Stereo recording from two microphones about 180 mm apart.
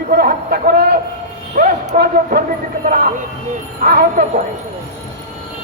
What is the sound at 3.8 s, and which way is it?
Music, 50° right (ahead or behind).